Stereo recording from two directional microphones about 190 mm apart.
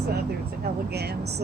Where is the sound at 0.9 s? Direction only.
60° right (ahead or behind).